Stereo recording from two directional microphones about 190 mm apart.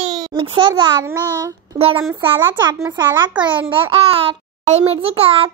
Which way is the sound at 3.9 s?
30° right (ahead or behind).